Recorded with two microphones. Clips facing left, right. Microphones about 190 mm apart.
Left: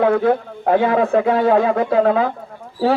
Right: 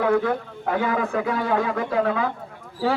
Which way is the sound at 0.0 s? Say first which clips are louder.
Left 5 dB; 30° left (ahead or behind).